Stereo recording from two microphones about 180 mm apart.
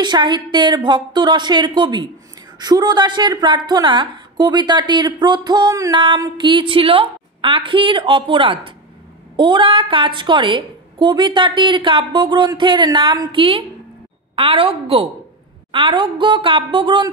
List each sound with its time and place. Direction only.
0.0 s a woman's voice: 25° right (ahead or behind)